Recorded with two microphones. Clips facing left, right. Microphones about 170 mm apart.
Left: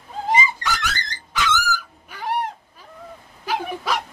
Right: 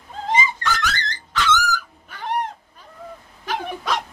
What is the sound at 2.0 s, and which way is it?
Dog, 10° left (ahead or behind).